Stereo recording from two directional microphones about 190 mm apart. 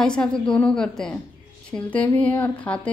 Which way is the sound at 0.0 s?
5° left (ahead or behind).